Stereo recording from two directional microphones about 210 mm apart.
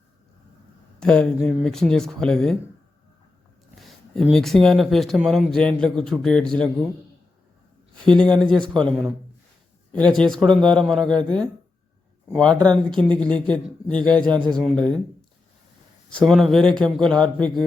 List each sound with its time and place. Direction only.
0.9 s speech: 5° left (ahead or behind)
3.8 s speech: centre (ahead or behind)
8.0 s speech: 5° left (ahead or behind)
16.0 s speech: centre (ahead or behind)